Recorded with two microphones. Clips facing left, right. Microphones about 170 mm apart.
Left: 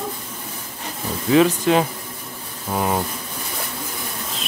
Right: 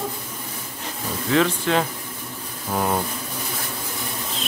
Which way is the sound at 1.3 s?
15° left (ahead or behind).